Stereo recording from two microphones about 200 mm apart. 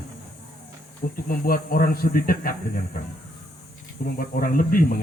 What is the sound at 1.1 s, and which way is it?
A man's voice, 45° left (ahead or behind).